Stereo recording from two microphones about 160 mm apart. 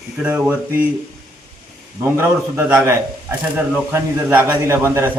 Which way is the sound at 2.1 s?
15° right (ahead or behind).